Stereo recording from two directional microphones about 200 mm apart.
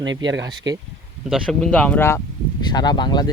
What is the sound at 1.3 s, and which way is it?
Speech, centre (ahead or behind).